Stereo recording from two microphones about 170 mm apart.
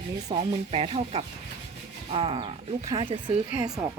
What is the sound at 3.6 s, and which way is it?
Speech, 20° right (ahead or behind).